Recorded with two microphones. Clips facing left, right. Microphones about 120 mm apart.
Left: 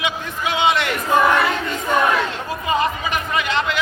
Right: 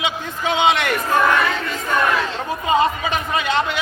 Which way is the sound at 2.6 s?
20° right (ahead or behind).